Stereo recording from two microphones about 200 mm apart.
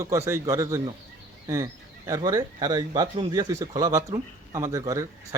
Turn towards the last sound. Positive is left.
turn(degrees=-15)  # may be behind; listen again after turning